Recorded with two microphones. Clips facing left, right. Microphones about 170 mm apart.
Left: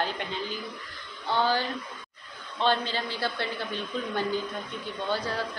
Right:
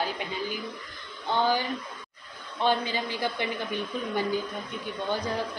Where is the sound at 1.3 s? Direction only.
15° right (ahead or behind).